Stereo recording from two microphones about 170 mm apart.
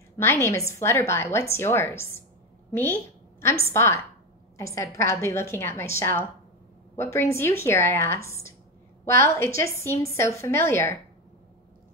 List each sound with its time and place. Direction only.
0.2 s a woman's voice: 15° left (ahead or behind)